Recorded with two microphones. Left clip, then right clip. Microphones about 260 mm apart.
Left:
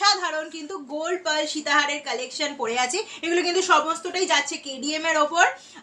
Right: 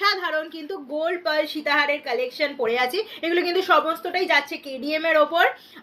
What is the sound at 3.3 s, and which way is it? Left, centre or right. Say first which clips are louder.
A woman's voice: even; centre.